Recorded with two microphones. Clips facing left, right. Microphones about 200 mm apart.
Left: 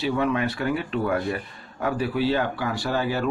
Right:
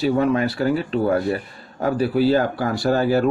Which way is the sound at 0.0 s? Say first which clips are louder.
Right 5 dB; 40° right (ahead or behind).